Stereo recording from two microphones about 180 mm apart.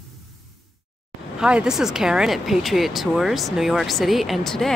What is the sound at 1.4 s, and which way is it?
Speech, 5° right (ahead or behind).